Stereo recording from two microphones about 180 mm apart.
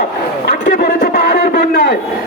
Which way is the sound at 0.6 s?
55° left (ahead or behind).